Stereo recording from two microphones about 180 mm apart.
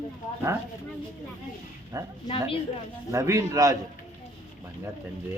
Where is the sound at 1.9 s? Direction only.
20° right (ahead or behind).